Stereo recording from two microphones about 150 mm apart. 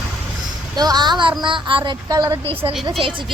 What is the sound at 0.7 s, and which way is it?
A woman's voice, 25° right (ahead or behind).